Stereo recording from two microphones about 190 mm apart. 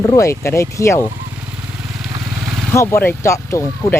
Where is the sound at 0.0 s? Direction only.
15° left (ahead or behind).